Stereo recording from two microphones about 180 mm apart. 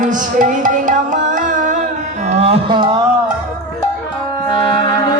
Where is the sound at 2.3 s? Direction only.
35° right (ahead or behind).